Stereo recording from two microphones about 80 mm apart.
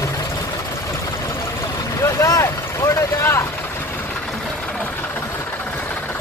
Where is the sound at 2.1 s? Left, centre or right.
Left.